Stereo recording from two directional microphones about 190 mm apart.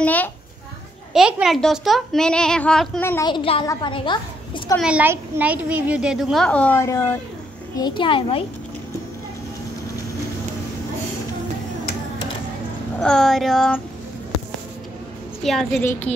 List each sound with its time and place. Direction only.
0.0 s a child's voice: 10° left (ahead or behind)
1.1 s a woman's voice: centre (ahead or behind)
3.3 s a child's voice: 25° left (ahead or behind)
4.7 s a woman's voice: 5° right (ahead or behind); by 7.2 s 10° left (ahead or behind)
8.0 s a child's voice: 30° left (ahead or behind)
13.0 s a woman's voice: 5° left (ahead or behind)
15.4 s a woman's voice: centre (ahead or behind)